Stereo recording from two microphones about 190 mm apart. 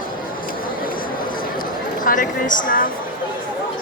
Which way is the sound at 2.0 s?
45° left (ahead or behind).